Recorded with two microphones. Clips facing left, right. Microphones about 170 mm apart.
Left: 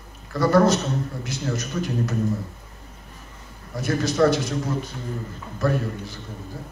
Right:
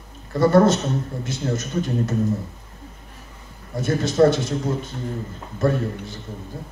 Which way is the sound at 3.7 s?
25° right (ahead or behind).